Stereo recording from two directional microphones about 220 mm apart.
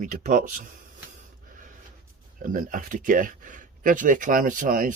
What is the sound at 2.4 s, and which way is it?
Speech, 40° right (ahead or behind).